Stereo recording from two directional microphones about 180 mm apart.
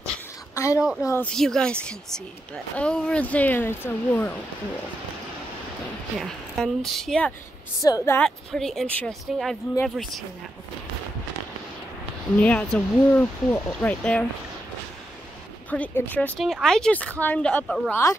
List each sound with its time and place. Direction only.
0.6 s a sound: 15° left (ahead or behind)
1.0 s a woman's voice: 15° left (ahead or behind)
1.3 s a woman's voice: 5° left (ahead or behind)
6.1 s a woman's voice: centre (ahead or behind)
7.8 s a woman's voice: 15° left (ahead or behind); by 10.2 s centre (ahead or behind)
12.4 s a woman's voice: 10° left (ahead or behind)
15.7 s a woman's voice: 10° left (ahead or behind)